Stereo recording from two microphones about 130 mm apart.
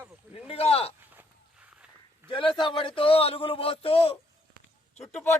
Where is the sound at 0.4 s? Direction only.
50° left (ahead or behind).